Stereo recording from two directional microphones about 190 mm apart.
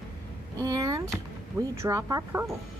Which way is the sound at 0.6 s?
20° right (ahead or behind).